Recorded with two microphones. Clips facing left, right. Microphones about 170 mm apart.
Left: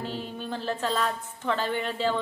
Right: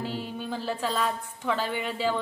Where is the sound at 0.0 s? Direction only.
10° right (ahead or behind).